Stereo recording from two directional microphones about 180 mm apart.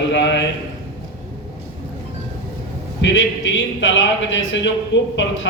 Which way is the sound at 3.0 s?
90° left.